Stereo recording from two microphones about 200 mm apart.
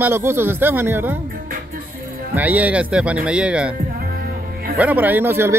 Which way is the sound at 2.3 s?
10° right (ahead or behind).